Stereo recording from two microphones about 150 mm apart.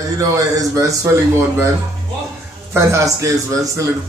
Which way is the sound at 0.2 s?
20° right (ahead or behind).